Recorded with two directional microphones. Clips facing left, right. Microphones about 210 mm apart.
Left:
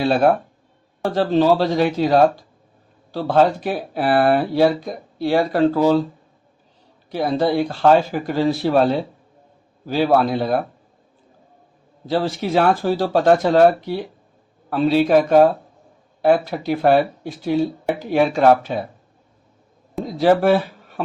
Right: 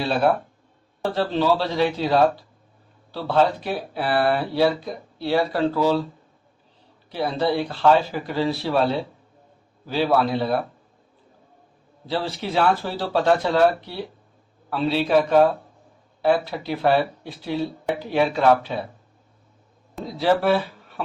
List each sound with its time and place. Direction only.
1.1 s speech: 45° left (ahead or behind)
7.1 s speech: 45° left (ahead or behind)
9.8 s speech: 45° left (ahead or behind)
12.0 s speech: 45° left (ahead or behind)
14.7 s speech: 45° left (ahead or behind)
20.1 s speech: 45° left (ahead or behind)